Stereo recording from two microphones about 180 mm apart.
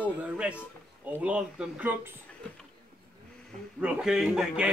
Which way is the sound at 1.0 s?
10° right (ahead or behind).